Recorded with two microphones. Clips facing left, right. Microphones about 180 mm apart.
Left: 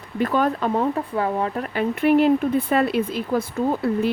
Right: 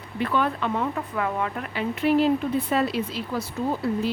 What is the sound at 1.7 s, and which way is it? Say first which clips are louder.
Speech: left 4 dB; 55° left (ahead or behind).